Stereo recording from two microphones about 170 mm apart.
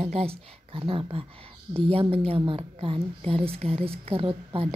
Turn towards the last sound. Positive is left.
turn(degrees=-35)  # may be behind; listen again after turning